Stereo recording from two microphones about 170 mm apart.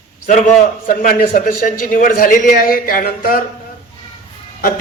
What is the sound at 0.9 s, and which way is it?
A man's voice, 55° left (ahead or behind).